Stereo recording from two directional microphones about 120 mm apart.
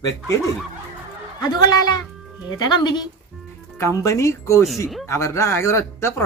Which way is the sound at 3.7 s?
25° left (ahead or behind).